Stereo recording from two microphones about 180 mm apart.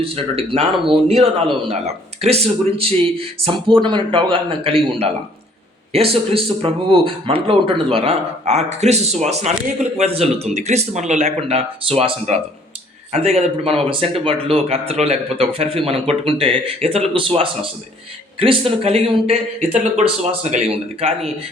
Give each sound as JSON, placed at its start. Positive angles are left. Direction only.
{"t": 0.0, "sound": "speech", "side_deg": -30}